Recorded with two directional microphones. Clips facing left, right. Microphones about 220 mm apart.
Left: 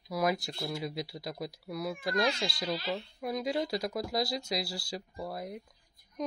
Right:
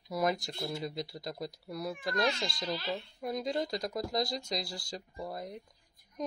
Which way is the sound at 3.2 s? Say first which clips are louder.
Left 1 dB; 5° left (ahead or behind).